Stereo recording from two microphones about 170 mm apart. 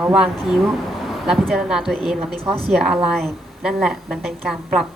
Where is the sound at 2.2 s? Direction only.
35° right (ahead or behind).